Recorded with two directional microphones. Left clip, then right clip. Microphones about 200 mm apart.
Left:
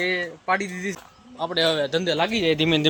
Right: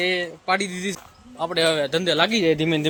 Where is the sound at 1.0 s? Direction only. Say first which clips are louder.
Right 1 dB; centre (ahead or behind).